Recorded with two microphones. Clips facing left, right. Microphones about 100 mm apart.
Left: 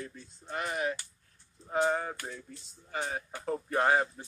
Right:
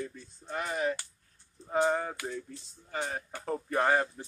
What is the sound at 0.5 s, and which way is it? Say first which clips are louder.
Speech: right 1 dB; 5° left (ahead or behind).